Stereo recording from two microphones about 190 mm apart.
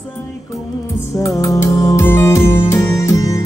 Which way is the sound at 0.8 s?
15° left (ahead or behind).